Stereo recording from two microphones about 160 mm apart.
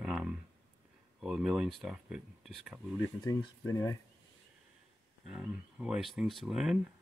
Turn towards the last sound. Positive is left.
turn(degrees=0)  # may be behind; listen again after turning